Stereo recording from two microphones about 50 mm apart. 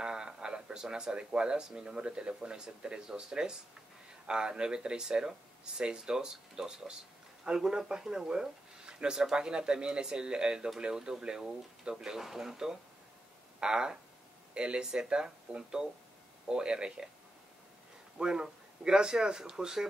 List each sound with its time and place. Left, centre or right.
0.0 s speech: centre
18.1 s speech: centre